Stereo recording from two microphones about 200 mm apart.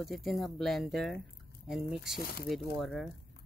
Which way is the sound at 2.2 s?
50° left (ahead or behind).